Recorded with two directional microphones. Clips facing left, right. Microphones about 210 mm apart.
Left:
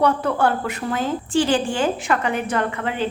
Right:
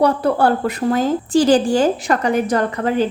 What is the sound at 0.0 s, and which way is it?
A woman's voice, 35° right (ahead or behind).